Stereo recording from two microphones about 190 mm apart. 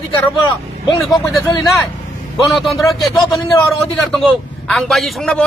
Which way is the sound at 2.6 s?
Centre (ahead or behind).